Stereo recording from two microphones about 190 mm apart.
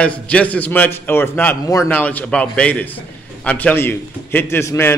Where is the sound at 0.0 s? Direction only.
5° left (ahead or behind).